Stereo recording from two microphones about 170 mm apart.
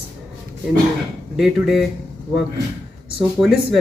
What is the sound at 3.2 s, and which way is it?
Speech, centre (ahead or behind).